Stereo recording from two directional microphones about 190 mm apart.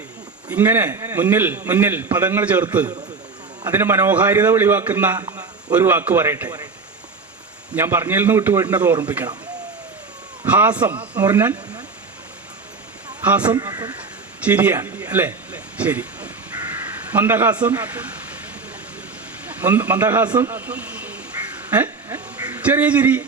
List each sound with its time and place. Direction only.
0.4 s a man's voice: 10° right (ahead or behind)
7.8 s a man's voice: 10° right (ahead or behind)
10.4 s a man's voice: 10° right (ahead or behind)
13.2 s a man's voice: 10° right (ahead or behind)
13.5 s speech: 20° right (ahead or behind)
14.4 s a sound: 10° right (ahead or behind)
17.1 s a man's voice: 10° right (ahead or behind)
19.5 s a man's voice: 10° right (ahead or behind)
21.7 s a sound: 10° right (ahead or behind)